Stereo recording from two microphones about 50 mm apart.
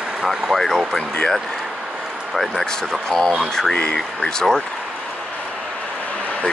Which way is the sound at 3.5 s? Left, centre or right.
Centre.